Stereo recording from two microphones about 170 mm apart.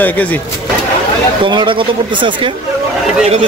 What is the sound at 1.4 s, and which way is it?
Speech, 30° right (ahead or behind).